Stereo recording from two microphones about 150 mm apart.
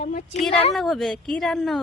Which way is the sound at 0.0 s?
55° left (ahead or behind).